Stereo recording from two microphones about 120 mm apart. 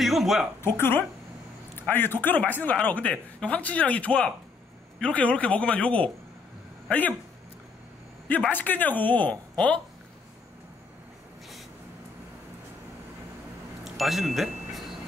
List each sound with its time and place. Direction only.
0.0 s speech: centre (ahead or behind)
0.6 s speech: 20° left (ahead or behind)
8.5 s speech: 15° left (ahead or behind)
13.8 s a sound: centre (ahead or behind)